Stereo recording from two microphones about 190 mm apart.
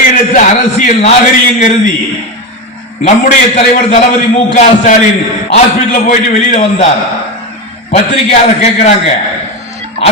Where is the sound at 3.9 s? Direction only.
35° left (ahead or behind).